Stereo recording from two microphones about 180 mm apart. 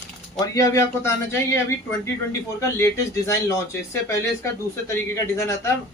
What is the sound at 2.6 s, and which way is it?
Speech, 15° left (ahead or behind).